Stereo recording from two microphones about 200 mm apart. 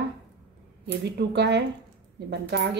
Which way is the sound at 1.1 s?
55° right (ahead or behind).